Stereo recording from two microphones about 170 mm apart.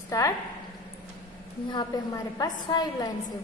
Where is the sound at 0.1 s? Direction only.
20° left (ahead or behind).